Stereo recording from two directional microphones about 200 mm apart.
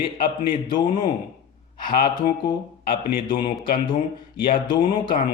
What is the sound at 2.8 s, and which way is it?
Speech, 50° left (ahead or behind).